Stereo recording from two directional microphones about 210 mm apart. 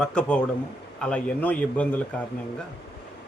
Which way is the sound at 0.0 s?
5° left (ahead or behind).